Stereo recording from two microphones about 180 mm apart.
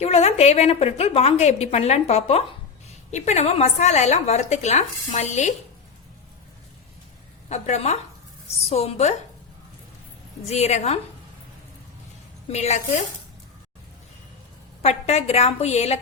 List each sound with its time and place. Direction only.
0.0 s a woman's voice: 35° left (ahead or behind)
7.4 s a woman's voice: 40° left (ahead or behind)
10.5 s a woman's voice: 35° left (ahead or behind)
12.5 s a woman's voice: 40° left (ahead or behind)
14.8 s a woman's voice: 35° left (ahead or behind)